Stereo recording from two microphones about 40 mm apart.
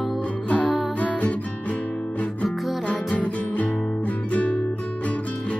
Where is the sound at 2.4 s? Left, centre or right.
Left.